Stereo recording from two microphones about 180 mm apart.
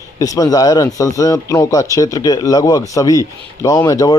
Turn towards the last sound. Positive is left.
turn(degrees=20)  # may be behind; listen again after turning